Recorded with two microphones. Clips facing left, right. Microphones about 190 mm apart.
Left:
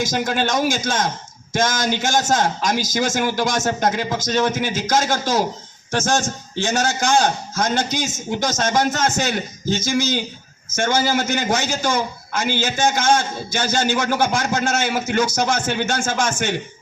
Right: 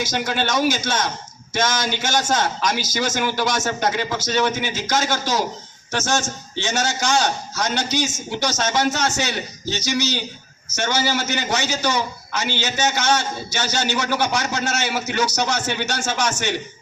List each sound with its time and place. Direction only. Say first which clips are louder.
0.0 s a man's voice: left 2 dB; 45° left (ahead or behind)